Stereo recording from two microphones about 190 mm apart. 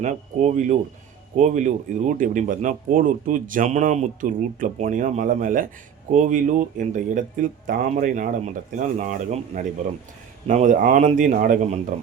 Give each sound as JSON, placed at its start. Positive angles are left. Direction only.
{"t": 0.0, "sound": "speech", "side_deg": -40}